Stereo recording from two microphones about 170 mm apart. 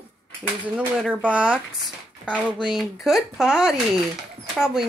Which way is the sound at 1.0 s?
5° right (ahead or behind).